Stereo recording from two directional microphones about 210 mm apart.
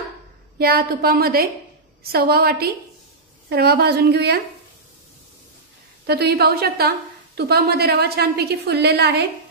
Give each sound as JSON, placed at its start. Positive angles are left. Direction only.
{"t": 0.6, "sound": "a woman's voice", "side_deg": -45}
{"t": 6.0, "sound": "a woman's voice", "side_deg": -50}